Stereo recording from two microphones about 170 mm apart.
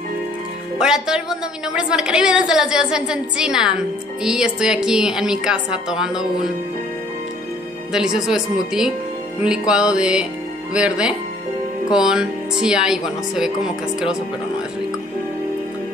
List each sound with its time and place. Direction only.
0.7 s a woman's voice: 5° right (ahead or behind)
7.9 s a woman's voice: 5° right (ahead or behind)